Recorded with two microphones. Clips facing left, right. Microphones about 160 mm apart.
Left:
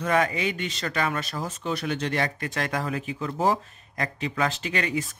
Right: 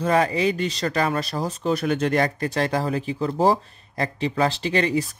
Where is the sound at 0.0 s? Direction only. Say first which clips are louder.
Right 4 dB; 35° right (ahead or behind).